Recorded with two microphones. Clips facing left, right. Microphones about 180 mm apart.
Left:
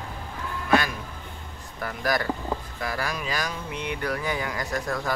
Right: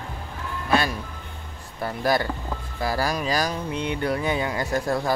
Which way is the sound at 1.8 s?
30° right (ahead or behind).